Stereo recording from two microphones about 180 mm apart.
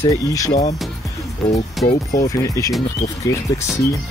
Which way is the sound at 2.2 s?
20° left (ahead or behind).